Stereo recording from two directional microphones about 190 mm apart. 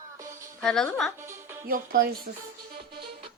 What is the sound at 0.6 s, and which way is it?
Speech, centre (ahead or behind).